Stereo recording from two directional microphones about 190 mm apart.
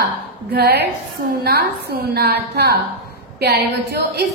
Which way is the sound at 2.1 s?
55° right (ahead or behind).